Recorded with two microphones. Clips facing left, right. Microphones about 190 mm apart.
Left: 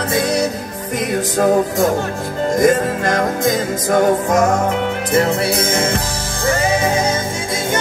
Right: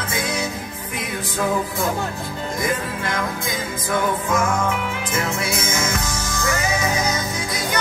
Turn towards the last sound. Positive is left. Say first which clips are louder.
# left 6 dB
turn(degrees=30)  # may be behind; listen again after turning